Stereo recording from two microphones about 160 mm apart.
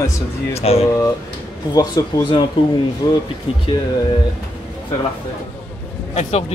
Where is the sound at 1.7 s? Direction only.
20° left (ahead or behind).